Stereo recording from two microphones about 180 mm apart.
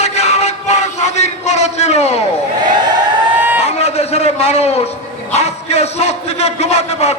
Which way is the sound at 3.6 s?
35° left (ahead or behind).